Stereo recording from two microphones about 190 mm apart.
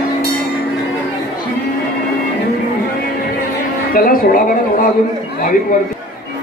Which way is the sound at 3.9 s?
50° left (ahead or behind).